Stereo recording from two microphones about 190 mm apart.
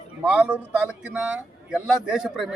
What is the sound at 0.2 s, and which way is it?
Speech, 5° right (ahead or behind).